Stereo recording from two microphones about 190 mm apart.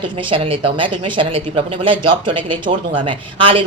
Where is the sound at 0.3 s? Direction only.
30° right (ahead or behind).